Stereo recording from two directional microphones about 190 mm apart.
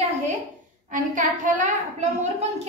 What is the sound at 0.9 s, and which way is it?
Speech, 45° right (ahead or behind).